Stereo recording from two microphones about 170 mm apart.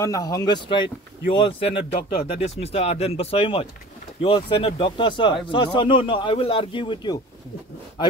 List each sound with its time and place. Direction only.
0.0 s a man's voice: 20° left (ahead or behind)